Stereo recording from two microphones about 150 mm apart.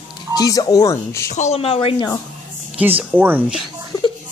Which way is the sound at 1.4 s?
45° left (ahead or behind).